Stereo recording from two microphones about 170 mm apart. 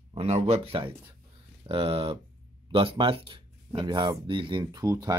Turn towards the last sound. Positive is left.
turn(degrees=-20)  # may be behind; listen again after turning